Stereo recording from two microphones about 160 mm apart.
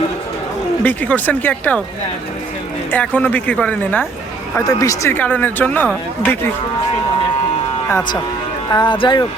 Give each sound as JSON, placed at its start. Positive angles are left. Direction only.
{"t": 0.9, "sound": "speech", "side_deg": 10}
{"t": 2.9, "sound": "speech", "side_deg": 10}
{"t": 4.5, "sound": "speech", "side_deg": 20}
{"t": 8.7, "sound": "speech", "side_deg": 30}